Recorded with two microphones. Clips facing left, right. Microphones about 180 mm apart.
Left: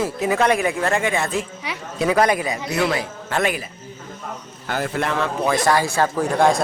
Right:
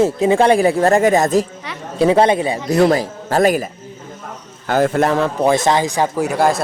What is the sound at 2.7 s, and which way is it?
A man's voice, 40° right (ahead or behind).